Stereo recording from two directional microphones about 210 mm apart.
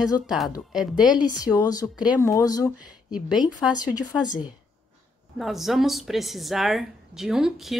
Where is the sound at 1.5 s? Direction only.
15° left (ahead or behind).